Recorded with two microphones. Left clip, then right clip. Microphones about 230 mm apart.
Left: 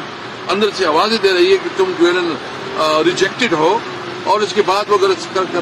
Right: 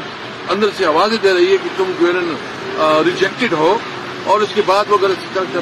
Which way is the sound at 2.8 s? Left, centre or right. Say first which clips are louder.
Right 1 dB; centre.